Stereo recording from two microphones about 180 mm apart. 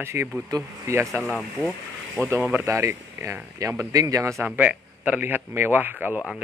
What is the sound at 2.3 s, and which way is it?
Speech, 10° right (ahead or behind).